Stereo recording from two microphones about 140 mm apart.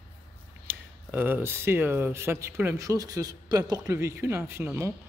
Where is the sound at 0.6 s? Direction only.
15° right (ahead or behind).